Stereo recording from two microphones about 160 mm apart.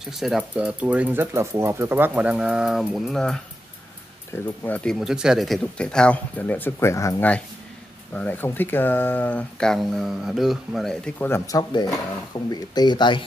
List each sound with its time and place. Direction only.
0.0 s speech: centre (ahead or behind)
4.3 s speech: 15° left (ahead or behind)
4.9 s speech: 5° right (ahead or behind); by 13.2 s 30° left (ahead or behind)